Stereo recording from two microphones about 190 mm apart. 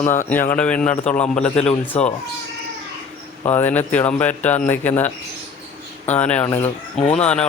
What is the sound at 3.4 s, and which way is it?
Speech, 10° left (ahead or behind).